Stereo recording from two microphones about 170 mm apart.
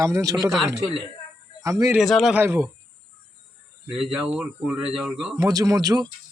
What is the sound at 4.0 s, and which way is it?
Speech, 5° right (ahead or behind).